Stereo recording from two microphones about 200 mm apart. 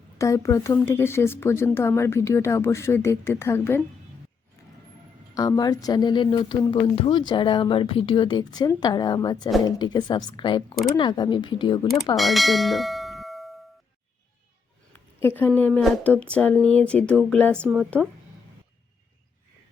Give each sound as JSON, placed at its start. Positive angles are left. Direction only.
{"t": 0.2, "sound": "speech", "side_deg": 15}
{"t": 5.3, "sound": "speech", "side_deg": 15}
{"t": 12.1, "sound": "bell", "side_deg": 0}
{"t": 14.9, "sound": "speech", "side_deg": 10}
{"t": 17.6, "sound": "speech", "side_deg": -5}